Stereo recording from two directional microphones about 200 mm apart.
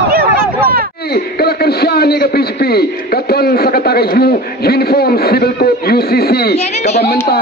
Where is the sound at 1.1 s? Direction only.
50° left (ahead or behind).